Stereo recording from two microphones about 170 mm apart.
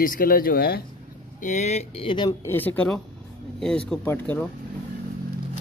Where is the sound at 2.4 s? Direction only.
10° left (ahead or behind).